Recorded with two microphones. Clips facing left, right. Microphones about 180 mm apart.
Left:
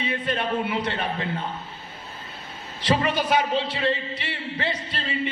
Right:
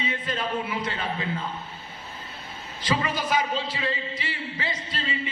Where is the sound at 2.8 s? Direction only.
65° left (ahead or behind).